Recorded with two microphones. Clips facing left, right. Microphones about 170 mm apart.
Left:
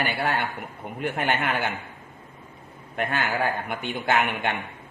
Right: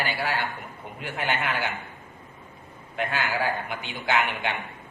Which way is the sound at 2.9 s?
55° left (ahead or behind).